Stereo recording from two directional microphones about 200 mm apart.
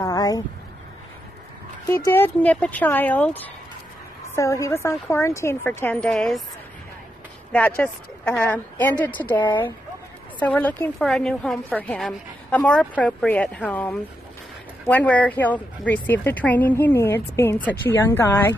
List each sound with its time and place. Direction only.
0.0 s a sound: 20° left (ahead or behind)
1.9 s speech: 10° left (ahead or behind)
7.5 s a woman's voice: 10° left (ahead or behind)